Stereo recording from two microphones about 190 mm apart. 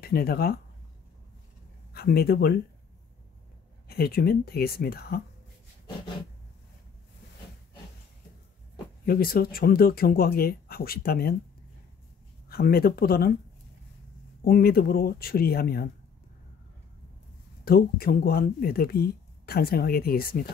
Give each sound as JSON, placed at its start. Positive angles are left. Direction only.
{"t": 0.0, "sound": "speech", "side_deg": 55}
{"t": 2.0, "sound": "speech", "side_deg": 55}
{"t": 3.9, "sound": "speech", "side_deg": 55}
{"t": 9.0, "sound": "speech", "side_deg": 50}
{"t": 12.4, "sound": "speech", "side_deg": 55}
{"t": 14.4, "sound": "speech", "side_deg": 55}
{"t": 17.6, "sound": "speech", "side_deg": 50}